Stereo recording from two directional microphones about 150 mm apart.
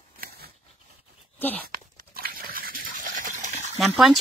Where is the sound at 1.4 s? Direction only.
10° left (ahead or behind).